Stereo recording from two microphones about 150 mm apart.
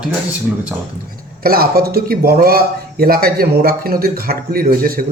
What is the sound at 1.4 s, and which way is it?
Speech, 85° right.